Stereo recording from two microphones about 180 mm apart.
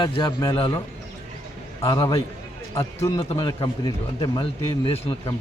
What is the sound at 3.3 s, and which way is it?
Speech, 30° left (ahead or behind).